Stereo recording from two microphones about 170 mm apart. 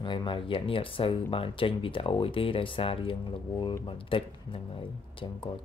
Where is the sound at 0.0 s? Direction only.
25° left (ahead or behind).